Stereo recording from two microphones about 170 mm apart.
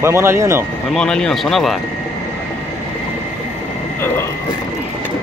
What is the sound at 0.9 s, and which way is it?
Speech, 5° left (ahead or behind).